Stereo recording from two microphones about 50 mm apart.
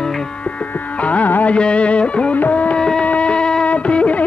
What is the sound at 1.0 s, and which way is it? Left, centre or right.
Music, left.